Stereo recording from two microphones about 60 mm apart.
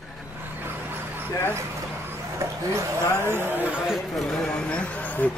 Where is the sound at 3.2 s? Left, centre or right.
Right.